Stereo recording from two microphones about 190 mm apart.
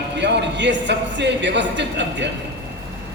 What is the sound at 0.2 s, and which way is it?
A man's voice, 65° right (ahead or behind).